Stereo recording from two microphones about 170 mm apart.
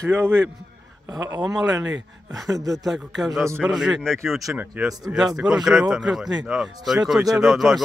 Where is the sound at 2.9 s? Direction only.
Centre (ahead or behind).